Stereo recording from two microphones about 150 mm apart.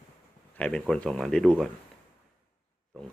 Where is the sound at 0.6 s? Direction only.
5° left (ahead or behind).